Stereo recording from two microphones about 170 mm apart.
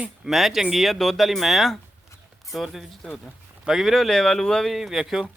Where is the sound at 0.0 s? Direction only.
Centre (ahead or behind).